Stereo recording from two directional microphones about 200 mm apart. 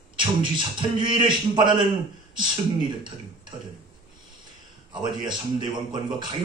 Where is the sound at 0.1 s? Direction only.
25° right (ahead or behind).